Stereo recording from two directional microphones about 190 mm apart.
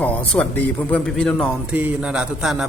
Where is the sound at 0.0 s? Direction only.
10° left (ahead or behind).